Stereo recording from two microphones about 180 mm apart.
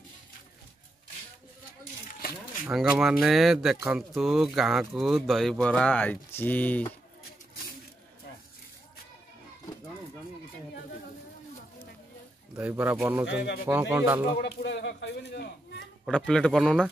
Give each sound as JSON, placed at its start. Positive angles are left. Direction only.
{"t": 2.7, "sound": "speech", "side_deg": 0}
{"t": 12.5, "sound": "speech", "side_deg": -10}
{"t": 14.4, "sound": "speech", "side_deg": 70}
{"t": 16.1, "sound": "speech", "side_deg": 5}